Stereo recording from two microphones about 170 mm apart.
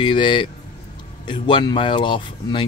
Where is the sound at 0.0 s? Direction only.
30° left (ahead or behind).